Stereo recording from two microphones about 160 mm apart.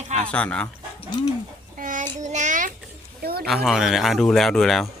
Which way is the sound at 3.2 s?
75° right (ahead or behind).